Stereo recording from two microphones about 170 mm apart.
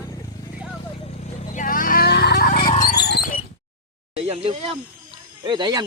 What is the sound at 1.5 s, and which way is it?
Vehicle, 55° left (ahead or behind).